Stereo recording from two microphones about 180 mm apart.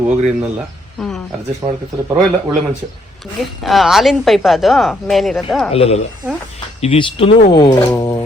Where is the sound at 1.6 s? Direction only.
20° right (ahead or behind).